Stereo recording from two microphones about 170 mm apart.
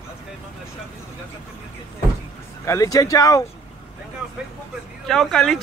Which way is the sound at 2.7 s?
20° left (ahead or behind).